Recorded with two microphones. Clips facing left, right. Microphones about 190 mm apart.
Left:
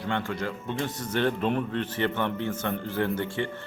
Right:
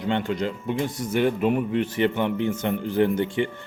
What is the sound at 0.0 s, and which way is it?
A man's voice, 20° right (ahead or behind).